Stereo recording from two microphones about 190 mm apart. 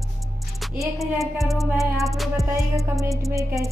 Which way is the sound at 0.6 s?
Centre (ahead or behind).